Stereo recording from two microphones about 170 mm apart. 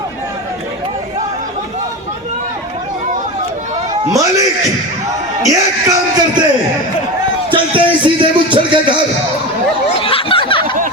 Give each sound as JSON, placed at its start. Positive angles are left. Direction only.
{"t": 4.1, "sound": "a man's voice", "side_deg": -20}
{"t": 5.4, "sound": "music", "side_deg": -20}
{"t": 7.5, "sound": "music", "side_deg": -30}
{"t": 10.0, "sound": "a sound", "side_deg": 30}